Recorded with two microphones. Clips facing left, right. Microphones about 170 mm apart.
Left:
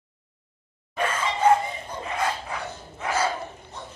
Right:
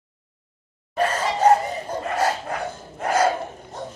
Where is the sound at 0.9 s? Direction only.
40° right (ahead or behind).